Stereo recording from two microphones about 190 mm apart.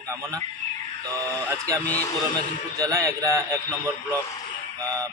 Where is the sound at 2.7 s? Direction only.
15° right (ahead or behind).